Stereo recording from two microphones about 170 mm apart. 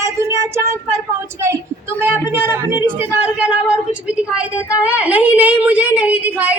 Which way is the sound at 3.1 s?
5° right (ahead or behind).